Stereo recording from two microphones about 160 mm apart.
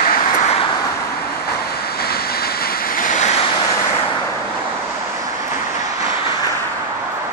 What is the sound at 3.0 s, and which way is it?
Waves, 50° left (ahead or behind).